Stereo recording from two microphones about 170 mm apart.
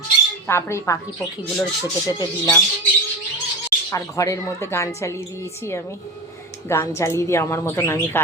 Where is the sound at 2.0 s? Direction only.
20° left (ahead or behind).